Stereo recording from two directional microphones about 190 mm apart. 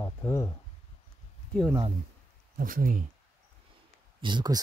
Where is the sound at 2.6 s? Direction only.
45° right (ahead or behind).